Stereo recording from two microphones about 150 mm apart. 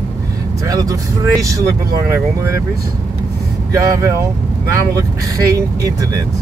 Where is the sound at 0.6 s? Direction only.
25° right (ahead or behind).